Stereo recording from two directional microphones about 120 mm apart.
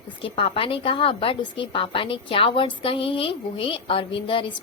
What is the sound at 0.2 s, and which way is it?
A woman's voice, 50° left (ahead or behind).